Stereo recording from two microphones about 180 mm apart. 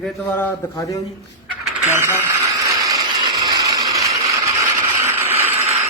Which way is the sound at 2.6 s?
20° right (ahead or behind).